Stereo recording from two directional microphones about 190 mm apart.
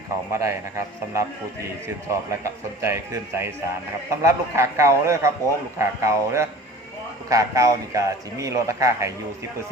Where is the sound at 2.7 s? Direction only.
15° right (ahead or behind).